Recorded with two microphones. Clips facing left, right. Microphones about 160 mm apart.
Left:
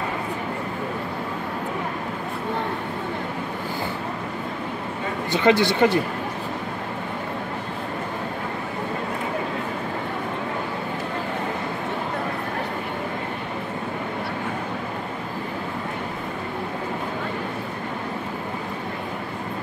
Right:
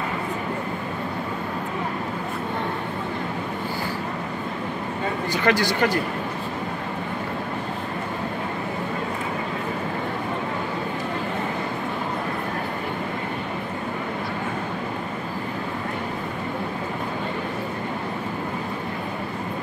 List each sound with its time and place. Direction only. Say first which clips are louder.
5.3 s speech: left 4 dB; 25° left (ahead or behind)